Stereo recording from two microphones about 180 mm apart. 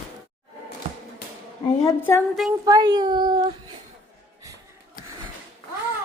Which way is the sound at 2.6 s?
20° right (ahead or behind).